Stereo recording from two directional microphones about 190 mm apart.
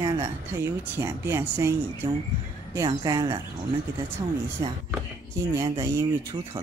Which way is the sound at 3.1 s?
20° right (ahead or behind).